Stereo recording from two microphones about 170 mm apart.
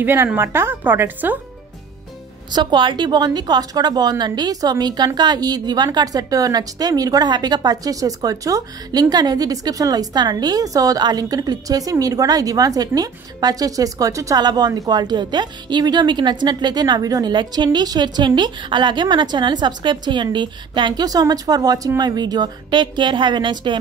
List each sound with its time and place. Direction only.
0.0 s a woman's voice: 10° right (ahead or behind)
2.5 s a woman's voice: 25° right (ahead or behind)